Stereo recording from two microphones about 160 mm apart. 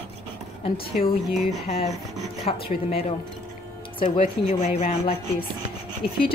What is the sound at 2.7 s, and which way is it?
A woman's voice, 40° left (ahead or behind).